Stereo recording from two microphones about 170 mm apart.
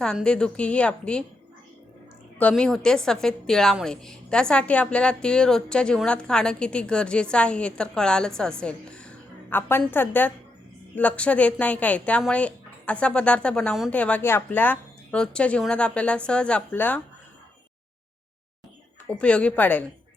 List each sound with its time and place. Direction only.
0.0 s a woman's voice: 5° left (ahead or behind)
2.4 s a woman's voice: 5° left (ahead or behind)
19.0 s a woman's voice: 5° left (ahead or behind)